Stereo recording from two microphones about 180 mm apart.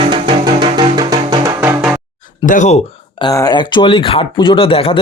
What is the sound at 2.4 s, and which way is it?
Speech, 45° left (ahead or behind).